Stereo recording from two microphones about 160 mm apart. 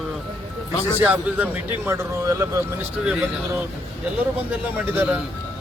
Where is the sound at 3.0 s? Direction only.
5° right (ahead or behind).